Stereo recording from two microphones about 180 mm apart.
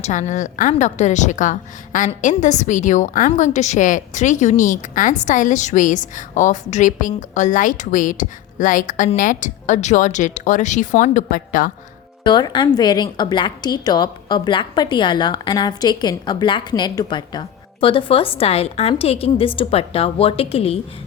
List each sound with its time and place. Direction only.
0.0 s a woman's voice: 40° left (ahead or behind)
12.2 s a woman's voice: 25° left (ahead or behind)